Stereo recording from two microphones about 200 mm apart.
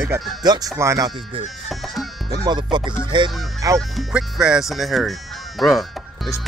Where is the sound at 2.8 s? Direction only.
5° right (ahead or behind).